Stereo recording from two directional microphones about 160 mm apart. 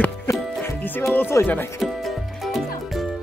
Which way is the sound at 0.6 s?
10° left (ahead or behind).